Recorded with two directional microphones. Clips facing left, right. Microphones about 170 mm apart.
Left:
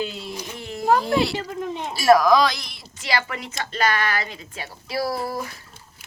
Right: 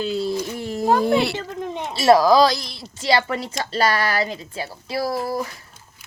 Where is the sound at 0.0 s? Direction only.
35° right (ahead or behind).